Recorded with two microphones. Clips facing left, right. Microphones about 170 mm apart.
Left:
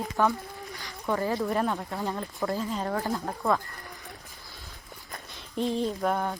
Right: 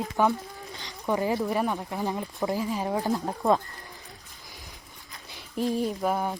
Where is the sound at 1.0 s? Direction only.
15° right (ahead or behind).